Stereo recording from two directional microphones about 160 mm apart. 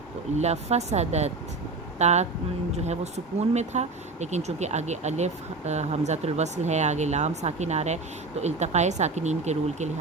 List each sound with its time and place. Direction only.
0.3 s speech: 45° right (ahead or behind)